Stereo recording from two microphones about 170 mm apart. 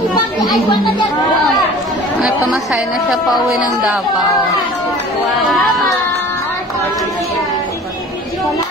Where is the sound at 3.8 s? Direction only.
Centre (ahead or behind).